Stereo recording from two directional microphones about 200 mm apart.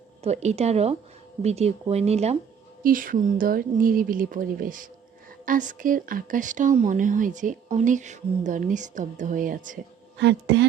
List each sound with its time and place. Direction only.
0.2 s speech: 35° right (ahead or behind)
2.8 s speech: 45° right (ahead or behind)
10.2 s a woman's voice: 60° right (ahead or behind)